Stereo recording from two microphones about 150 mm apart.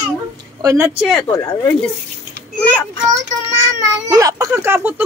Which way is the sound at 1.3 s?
20° left (ahead or behind).